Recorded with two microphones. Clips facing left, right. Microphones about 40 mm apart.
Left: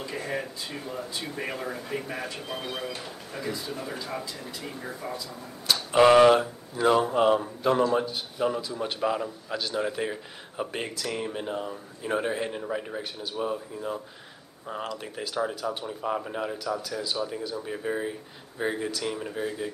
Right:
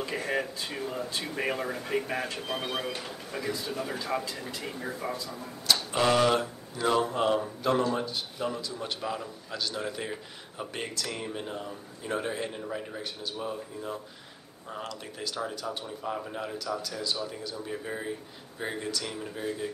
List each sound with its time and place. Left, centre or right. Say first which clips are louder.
0.0 s a sound: right 2 dB; centre
0.7 s speech: right 2 dB; centre
1.3 s speech: right 3 dB; centre
3.0 s speech: even; centre
4.6 s speech: right 2 dB; centre
5.9 s speech: left 8 dB; left
6.4 s a man's voice: left 5 dB; centre